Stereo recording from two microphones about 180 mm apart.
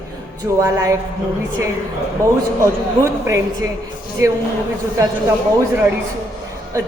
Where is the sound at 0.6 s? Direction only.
15° right (ahead or behind).